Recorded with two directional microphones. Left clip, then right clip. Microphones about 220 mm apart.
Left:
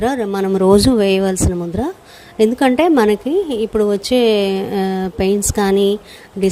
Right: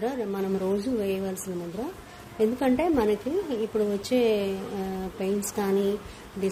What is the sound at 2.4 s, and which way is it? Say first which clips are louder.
A woman's voice: left 11 dB; 40° left (ahead or behind).